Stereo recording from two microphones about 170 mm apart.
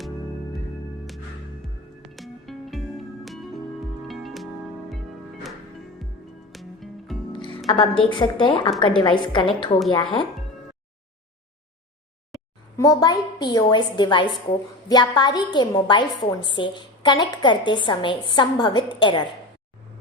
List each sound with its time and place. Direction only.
1.6 s music: centre (ahead or behind)
6.5 s music: centre (ahead or behind)
7.3 s music: 30° left (ahead or behind)
7.7 s a woman's voice: 30° left (ahead or behind)
12.7 s a woman's voice: 20° left (ahead or behind)